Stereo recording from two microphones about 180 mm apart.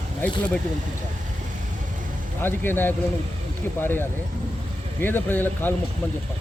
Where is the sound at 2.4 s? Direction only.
10° left (ahead or behind).